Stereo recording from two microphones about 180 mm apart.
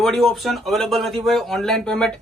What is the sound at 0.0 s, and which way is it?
Speech, centre (ahead or behind).